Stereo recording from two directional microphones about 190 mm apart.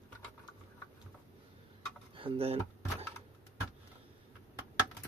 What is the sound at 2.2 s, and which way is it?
Speech, 30° right (ahead or behind).